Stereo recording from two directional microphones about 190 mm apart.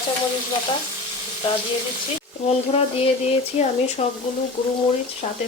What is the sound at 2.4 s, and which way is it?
Speech, 35° left (ahead or behind).